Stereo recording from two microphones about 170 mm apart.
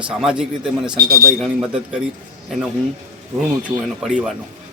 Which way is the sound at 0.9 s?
60° right (ahead or behind).